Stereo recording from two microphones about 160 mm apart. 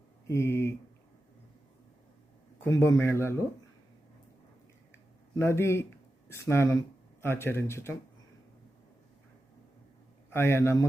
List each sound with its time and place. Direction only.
0.3 s speech: 15° left (ahead or behind)
2.6 s speech: 15° left (ahead or behind)
5.3 s speech: 15° left (ahead or behind)
10.2 s speech: 15° left (ahead or behind)